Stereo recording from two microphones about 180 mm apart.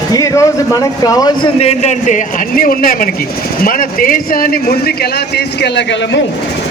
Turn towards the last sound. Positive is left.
turn(degrees=75)  # may be behind; listen again after turning